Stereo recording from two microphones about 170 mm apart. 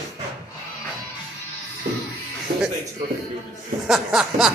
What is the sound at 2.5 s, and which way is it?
Music, 75° right (ahead or behind).